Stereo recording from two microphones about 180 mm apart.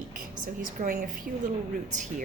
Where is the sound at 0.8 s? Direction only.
50° right (ahead or behind).